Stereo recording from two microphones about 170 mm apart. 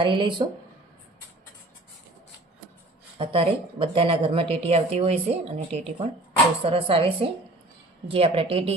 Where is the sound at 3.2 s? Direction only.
30° right (ahead or behind).